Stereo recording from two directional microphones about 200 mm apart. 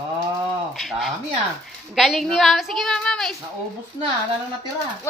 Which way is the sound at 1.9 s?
Centre (ahead or behind).